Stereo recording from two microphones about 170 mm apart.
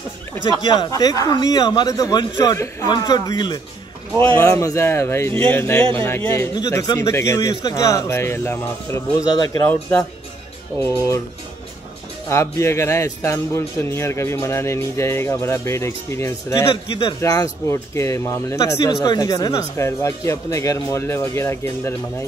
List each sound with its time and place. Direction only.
0.5 s speech: 25° left (ahead or behind); by 10.0 s 10° left (ahead or behind)
12.3 s speech: 15° left (ahead or behind)